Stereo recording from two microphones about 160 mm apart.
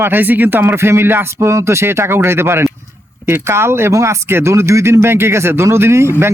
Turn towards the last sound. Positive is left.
turn(degrees=-15)  # may be behind; listen again after turning